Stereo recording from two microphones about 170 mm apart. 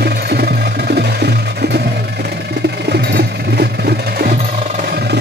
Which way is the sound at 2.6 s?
80° right.